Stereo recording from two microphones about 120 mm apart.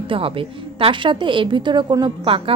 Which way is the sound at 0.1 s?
50° right (ahead or behind).